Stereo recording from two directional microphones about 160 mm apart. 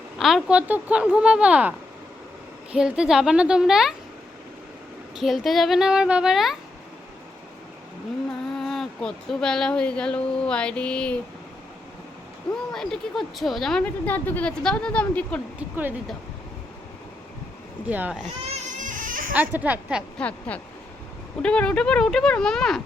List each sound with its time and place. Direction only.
0.2 s speech: centre (ahead or behind)
2.7 s speech: 5° right (ahead or behind)
5.1 s speech: centre (ahead or behind)
8.5 s speech: centre (ahead or behind)
12.7 s speech: 5° left (ahead or behind)
15.5 s speech: 10° right (ahead or behind)
17.8 s speech: 10° right (ahead or behind)
18.4 s baby cry: 50° right (ahead or behind)
19.3 s speech: 10° right (ahead or behind)
20.1 s a sound: 10° left (ahead or behind)
21.4 s speech: 5° left (ahead or behind)